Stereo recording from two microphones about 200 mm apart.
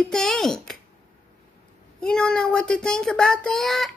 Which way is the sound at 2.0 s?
5° left (ahead or behind).